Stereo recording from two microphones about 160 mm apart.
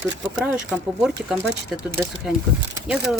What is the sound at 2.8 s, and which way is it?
Speech, 5° right (ahead or behind).